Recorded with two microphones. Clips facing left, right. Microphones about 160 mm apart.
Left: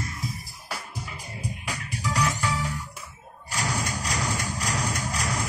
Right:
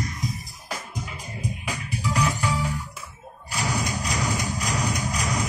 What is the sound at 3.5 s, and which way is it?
Thump, 15° right (ahead or behind).